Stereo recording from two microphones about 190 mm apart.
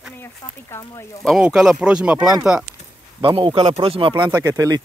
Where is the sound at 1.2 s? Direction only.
Centre (ahead or behind).